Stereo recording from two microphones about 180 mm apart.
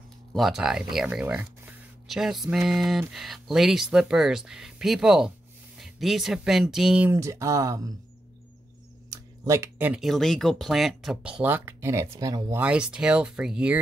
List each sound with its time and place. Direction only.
0.3 s speech: centre (ahead or behind); by 7.9 s 20° right (ahead or behind)
9.1 s speech: 20° right (ahead or behind)